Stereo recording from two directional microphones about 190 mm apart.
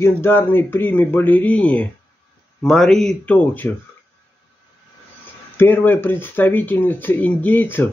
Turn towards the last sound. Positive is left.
turn(degrees=10)  # may be behind; listen again after turning